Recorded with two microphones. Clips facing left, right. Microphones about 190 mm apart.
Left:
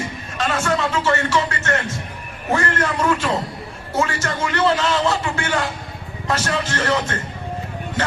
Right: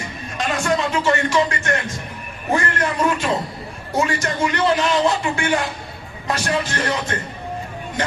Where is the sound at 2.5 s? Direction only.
15° right (ahead or behind).